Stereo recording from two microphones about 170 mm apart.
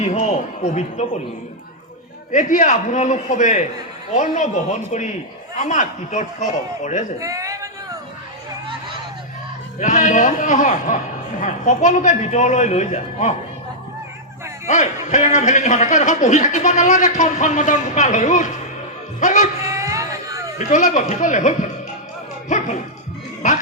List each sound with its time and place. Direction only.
0.0 s speech: 40° left (ahead or behind)
2.3 s a man's voice: 45° left (ahead or behind)
7.2 s a sound: 20° right (ahead or behind)
9.7 s a man's voice: 50° left (ahead or behind)
14.7 s a man's voice: 45° left (ahead or behind)
19.6 s a sound: 20° right (ahead or behind)
20.7 s a man's voice: 45° left (ahead or behind)